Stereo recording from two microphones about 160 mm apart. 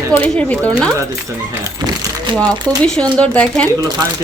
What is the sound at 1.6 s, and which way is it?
Dog, 25° right (ahead or behind).